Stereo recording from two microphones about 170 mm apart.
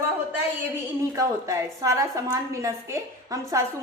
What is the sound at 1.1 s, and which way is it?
A woman's voice, 20° right (ahead or behind).